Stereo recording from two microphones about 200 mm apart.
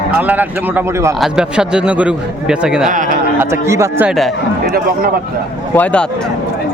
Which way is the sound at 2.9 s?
40° right (ahead or behind).